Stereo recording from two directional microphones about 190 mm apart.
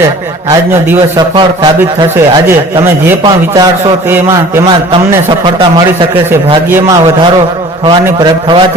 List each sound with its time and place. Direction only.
1.4 s a man's voice: 25° right (ahead or behind)
3.1 s a man's voice: 15° right (ahead or behind)
6.7 s a man's voice: 10° right (ahead or behind)
8.2 s a man's voice: 25° right (ahead or behind)